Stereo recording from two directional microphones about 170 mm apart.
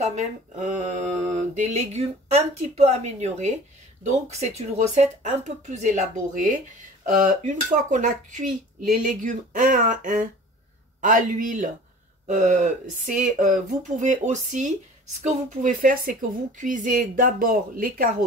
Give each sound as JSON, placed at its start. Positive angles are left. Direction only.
{"t": 0.0, "sound": "speech", "side_deg": -40}
{"t": 1.3, "sound": "mantra", "side_deg": -40}
{"t": 2.8, "sound": "speech", "side_deg": -40}